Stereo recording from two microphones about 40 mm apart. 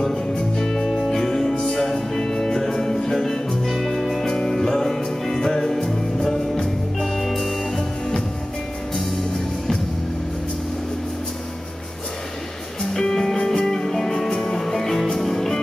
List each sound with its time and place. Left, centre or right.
0.4 s music: centre
0.8 s music: centre
1.1 s music: centre
3.6 s music: centre
7.0 s music: centre
12.8 s music: centre